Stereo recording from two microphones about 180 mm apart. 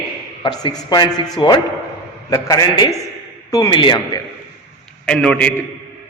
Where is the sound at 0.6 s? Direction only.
20° left (ahead or behind).